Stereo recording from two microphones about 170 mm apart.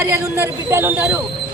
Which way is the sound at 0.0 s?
15° right (ahead or behind).